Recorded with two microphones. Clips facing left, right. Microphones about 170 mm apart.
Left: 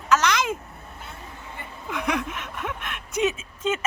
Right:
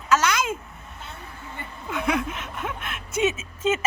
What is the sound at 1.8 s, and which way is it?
Speech, centre (ahead or behind).